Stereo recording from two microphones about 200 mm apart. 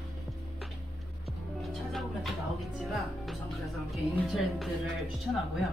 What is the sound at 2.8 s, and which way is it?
A woman's voice, centre (ahead or behind).